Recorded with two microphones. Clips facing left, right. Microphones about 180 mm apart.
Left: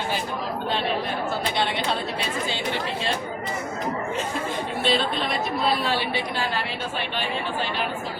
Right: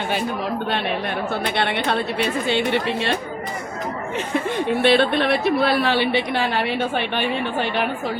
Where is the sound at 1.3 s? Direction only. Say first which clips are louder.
Right 4 dB; 60° right (ahead or behind).